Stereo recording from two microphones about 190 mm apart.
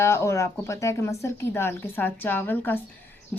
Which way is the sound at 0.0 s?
15° left (ahead or behind).